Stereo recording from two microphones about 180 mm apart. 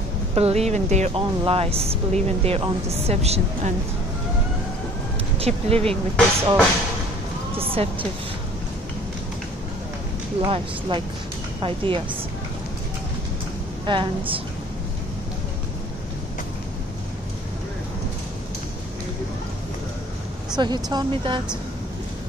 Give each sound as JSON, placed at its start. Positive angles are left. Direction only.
{"t": 0.3, "sound": "speech", "side_deg": -35}
{"t": 5.4, "sound": "speech", "side_deg": -35}
{"t": 5.9, "sound": "speech", "side_deg": 5}
{"t": 7.5, "sound": "speech", "side_deg": -30}
{"t": 10.4, "sound": "speech", "side_deg": -25}
{"t": 13.8, "sound": "speech", "side_deg": -25}
{"t": 20.5, "sound": "speech", "side_deg": -25}